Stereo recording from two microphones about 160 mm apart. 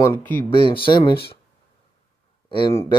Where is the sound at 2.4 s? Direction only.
30° left (ahead or behind).